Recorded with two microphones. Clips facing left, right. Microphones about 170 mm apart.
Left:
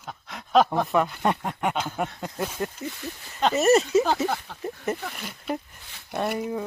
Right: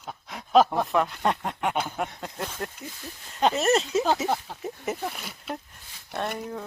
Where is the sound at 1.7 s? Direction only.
10° right (ahead or behind).